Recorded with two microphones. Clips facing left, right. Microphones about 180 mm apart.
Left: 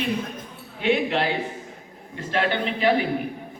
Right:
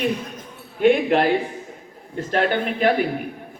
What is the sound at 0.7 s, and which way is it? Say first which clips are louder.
A man's voice: right 6 dB; 50° right (ahead or behind).